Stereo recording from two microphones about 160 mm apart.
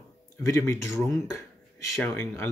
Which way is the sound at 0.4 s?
20° left (ahead or behind).